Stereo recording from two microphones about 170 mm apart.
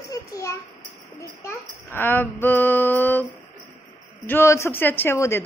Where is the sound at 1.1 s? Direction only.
15° left (ahead or behind).